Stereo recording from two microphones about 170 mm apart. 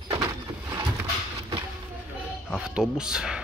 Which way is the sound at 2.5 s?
5° right (ahead or behind).